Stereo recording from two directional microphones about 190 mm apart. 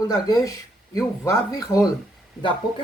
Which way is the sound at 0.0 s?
20° left (ahead or behind).